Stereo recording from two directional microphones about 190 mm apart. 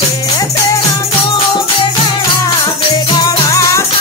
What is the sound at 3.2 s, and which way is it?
Music, 15° left (ahead or behind).